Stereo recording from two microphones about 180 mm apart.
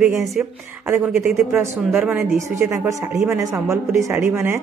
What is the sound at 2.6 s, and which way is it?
A woman's voice, 15° right (ahead or behind).